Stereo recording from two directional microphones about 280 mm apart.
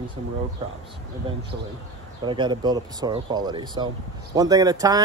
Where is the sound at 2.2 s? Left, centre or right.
Centre.